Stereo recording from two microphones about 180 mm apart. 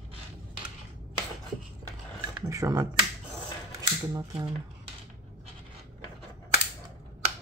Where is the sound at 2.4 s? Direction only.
15° right (ahead or behind).